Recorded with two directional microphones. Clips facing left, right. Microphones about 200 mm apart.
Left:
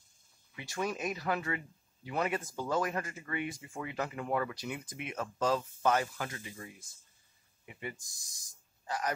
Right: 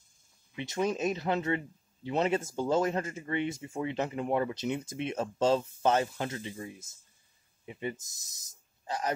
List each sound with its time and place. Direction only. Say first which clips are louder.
0.6 s speech: right 6 dB; 20° right (ahead or behind)